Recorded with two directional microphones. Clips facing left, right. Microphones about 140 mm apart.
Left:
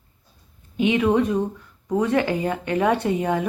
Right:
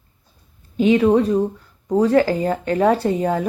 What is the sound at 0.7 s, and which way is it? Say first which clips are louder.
Speech: right 4 dB; 35° right (ahead or behind).